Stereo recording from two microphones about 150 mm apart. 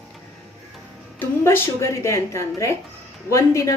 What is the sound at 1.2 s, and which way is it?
A woman's voice, 15° left (ahead or behind).